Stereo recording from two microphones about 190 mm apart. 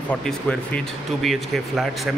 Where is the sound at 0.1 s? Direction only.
5° left (ahead or behind).